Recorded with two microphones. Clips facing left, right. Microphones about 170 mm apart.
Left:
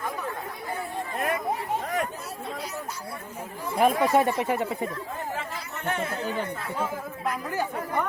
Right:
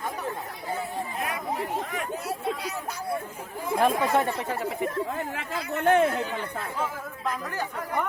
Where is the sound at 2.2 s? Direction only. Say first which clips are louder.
Right 5 dB; 65° right (ahead or behind).